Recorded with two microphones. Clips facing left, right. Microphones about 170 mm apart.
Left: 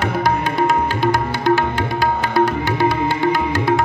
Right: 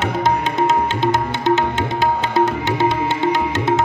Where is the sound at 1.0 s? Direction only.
20° right (ahead or behind).